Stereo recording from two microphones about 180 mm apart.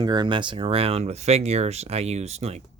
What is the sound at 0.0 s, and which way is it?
Speech, 25° right (ahead or behind).